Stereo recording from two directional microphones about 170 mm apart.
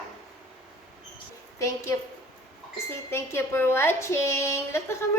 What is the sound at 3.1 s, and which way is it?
A woman's voice, 15° left (ahead or behind).